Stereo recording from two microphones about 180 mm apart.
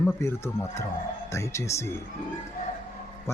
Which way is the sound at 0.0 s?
15° left (ahead or behind).